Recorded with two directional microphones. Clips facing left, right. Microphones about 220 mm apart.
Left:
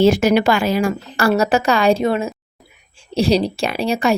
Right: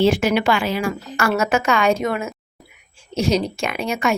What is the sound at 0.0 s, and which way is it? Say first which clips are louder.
A woman's voice: left 4 dB; 40° left (ahead or behind).